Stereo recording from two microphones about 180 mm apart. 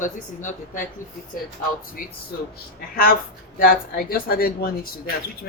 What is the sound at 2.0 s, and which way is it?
A woman's voice, 50° left (ahead or behind).